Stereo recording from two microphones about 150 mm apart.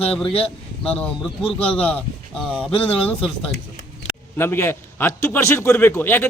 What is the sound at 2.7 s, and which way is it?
Speech, 40° left (ahead or behind).